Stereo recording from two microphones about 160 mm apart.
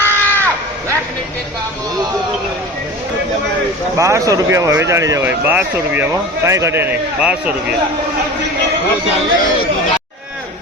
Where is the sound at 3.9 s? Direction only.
20° right (ahead or behind).